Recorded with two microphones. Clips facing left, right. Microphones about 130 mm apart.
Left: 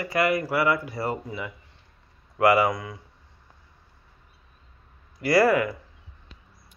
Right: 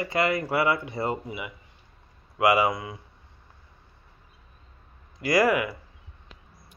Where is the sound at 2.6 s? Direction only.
25° right (ahead or behind).